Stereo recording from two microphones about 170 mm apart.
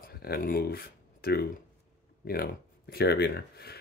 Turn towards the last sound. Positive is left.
turn(degrees=70)  # may be behind; listen again after turning